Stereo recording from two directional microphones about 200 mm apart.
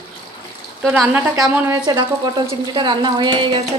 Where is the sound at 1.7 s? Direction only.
20° right (ahead or behind).